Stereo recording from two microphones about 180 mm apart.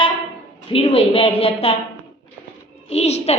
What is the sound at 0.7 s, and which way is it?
A woman's voice, 30° left (ahead or behind).